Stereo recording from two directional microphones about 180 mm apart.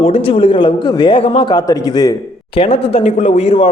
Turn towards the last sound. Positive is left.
turn(degrees=35)  # may be behind; listen again after turning